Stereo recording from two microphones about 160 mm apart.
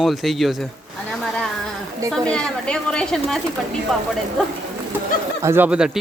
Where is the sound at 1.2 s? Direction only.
5° left (ahead or behind).